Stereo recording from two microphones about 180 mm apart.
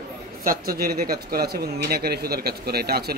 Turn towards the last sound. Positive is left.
turn(degrees=-60)  # may be behind; listen again after turning